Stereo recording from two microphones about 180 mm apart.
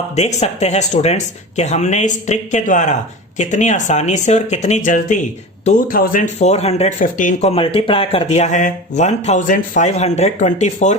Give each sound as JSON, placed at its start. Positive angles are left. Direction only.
{"t": 0.2, "sound": "speech", "side_deg": 40}